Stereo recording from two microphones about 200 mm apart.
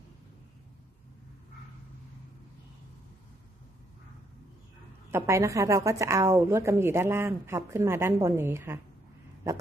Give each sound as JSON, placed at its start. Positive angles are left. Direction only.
{"t": 5.1, "sound": "a woman's voice", "side_deg": -15}